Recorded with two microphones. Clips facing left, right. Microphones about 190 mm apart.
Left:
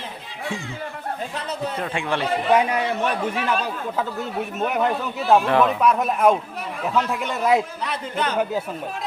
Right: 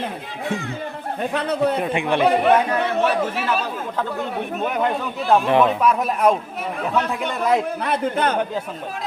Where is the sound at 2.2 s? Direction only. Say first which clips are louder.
Right 3 dB; 60° right (ahead or behind).